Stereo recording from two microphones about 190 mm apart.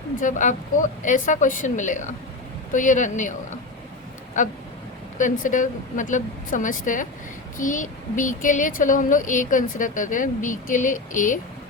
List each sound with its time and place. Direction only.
0.2 s a woman's voice: 40° left (ahead or behind)
4.4 s speech: 40° left (ahead or behind)